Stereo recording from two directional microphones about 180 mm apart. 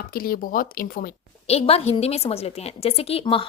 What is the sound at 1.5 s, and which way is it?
A woman's voice, 35° left (ahead or behind).